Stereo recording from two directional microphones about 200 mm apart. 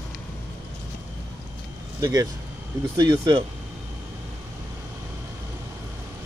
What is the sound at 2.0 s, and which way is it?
Speech, 20° right (ahead or behind).